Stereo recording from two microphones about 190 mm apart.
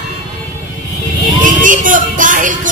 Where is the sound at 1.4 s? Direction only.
45° right (ahead or behind).